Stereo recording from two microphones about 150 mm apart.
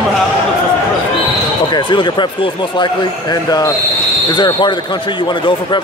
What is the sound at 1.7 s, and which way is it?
Speech, 30° left (ahead or behind).